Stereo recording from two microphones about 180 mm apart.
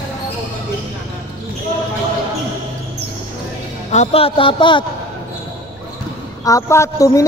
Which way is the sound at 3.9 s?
35° left (ahead or behind).